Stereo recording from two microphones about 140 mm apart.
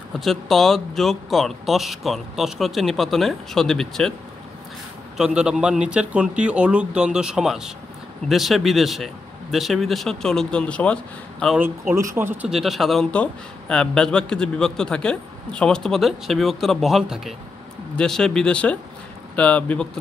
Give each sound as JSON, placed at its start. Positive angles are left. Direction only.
{"t": 0.2, "sound": "speech", "side_deg": 0}
{"t": 5.1, "sound": "speech", "side_deg": -5}
{"t": 11.9, "sound": "speech", "side_deg": -20}
{"t": 12.4, "sound": "speech", "side_deg": 0}